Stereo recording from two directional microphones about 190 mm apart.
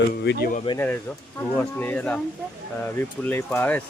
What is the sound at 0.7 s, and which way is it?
Speech, 25° left (ahead or behind).